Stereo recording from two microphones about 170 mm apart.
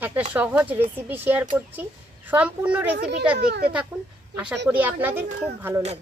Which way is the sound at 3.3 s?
75° right (ahead or behind).